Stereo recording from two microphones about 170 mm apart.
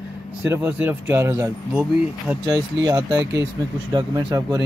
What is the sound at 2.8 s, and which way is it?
Speech, 20° right (ahead or behind).